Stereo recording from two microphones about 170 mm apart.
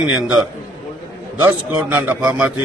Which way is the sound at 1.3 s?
10° right (ahead or behind).